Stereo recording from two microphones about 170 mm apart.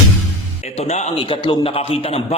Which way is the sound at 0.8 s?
40° left (ahead or behind).